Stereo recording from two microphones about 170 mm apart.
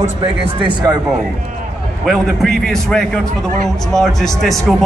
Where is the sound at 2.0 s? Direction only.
Centre (ahead or behind).